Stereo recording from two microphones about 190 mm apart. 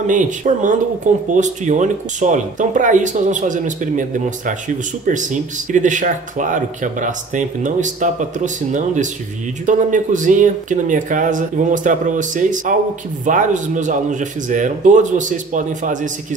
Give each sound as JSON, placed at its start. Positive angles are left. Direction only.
{"t": 0.0, "sound": "speech", "side_deg": -40}